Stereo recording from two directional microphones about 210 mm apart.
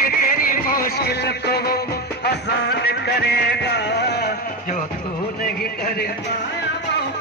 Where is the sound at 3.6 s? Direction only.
50° left (ahead or behind).